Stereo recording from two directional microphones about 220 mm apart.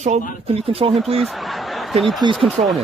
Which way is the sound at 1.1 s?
Centre (ahead or behind).